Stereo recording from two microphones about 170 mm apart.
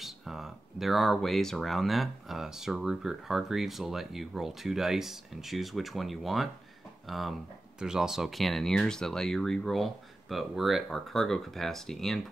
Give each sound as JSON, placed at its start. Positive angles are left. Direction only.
{"t": 0.0, "sound": "speech", "side_deg": 0}